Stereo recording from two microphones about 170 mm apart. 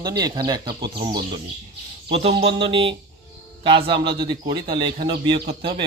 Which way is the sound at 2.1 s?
35° right (ahead or behind).